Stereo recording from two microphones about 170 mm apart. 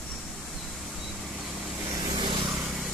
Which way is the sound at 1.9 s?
25° right (ahead or behind).